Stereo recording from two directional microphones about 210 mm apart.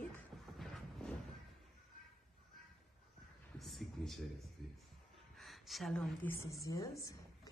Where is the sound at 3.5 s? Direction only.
Centre (ahead or behind).